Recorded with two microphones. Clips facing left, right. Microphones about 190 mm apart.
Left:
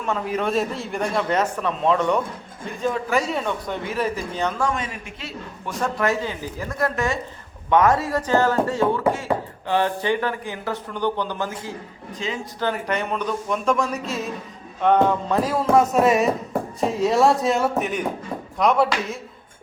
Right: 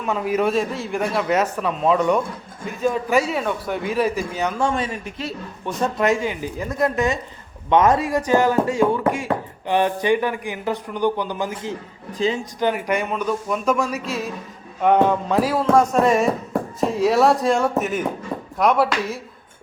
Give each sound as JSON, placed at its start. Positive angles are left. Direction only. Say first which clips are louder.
{"t": 0.0, "sound": "a man's voice", "louder": "right 3 dB", "side_deg": -10}
{"t": 4.6, "sound": "a man's voice", "louder": "right 3 dB", "side_deg": -30}
{"t": 15.8, "sound": "speech", "louder": "right 1 dB", "side_deg": 5}